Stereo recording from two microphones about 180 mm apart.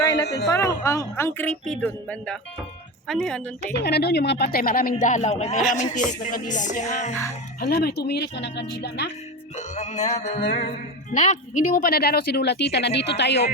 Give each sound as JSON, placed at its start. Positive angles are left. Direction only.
{"t": 0.0, "sound": "a sound", "side_deg": 20}
{"t": 0.4, "sound": "a woman's voice", "side_deg": 15}
{"t": 3.8, "sound": "speech", "side_deg": 65}
{"t": 7.6, "sound": "speech", "side_deg": 60}
{"t": 9.6, "sound": "speech", "side_deg": 40}